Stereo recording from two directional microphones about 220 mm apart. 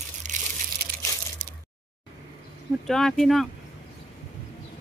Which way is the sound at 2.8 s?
Centre (ahead or behind).